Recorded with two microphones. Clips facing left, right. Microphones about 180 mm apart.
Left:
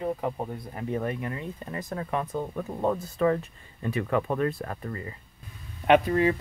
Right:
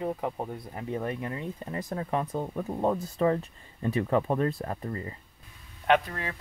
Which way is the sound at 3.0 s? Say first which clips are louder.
Left 1 dB; 30° right (ahead or behind).